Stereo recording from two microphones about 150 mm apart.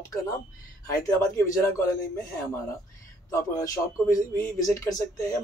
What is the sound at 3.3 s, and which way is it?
A man's voice, 20° left (ahead or behind).